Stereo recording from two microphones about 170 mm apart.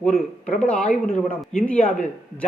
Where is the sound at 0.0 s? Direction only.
5° left (ahead or behind).